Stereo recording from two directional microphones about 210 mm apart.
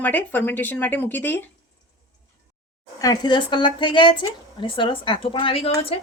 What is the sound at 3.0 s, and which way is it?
Speech, 20° left (ahead or behind).